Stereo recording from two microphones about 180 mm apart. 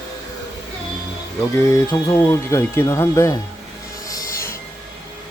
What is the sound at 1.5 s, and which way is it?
Speech, 15° left (ahead or behind).